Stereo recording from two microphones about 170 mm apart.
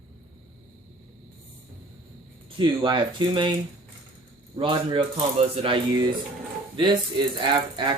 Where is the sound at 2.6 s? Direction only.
25° right (ahead or behind).